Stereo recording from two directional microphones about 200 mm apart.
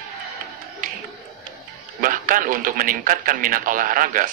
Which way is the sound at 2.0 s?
45° right (ahead or behind).